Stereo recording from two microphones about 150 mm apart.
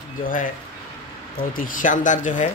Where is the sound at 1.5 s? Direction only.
65° left (ahead or behind).